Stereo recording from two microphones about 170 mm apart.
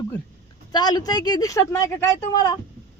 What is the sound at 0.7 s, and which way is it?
Speech, 25° left (ahead or behind).